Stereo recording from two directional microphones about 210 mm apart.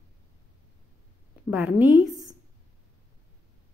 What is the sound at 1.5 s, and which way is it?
Speech, 5° right (ahead or behind).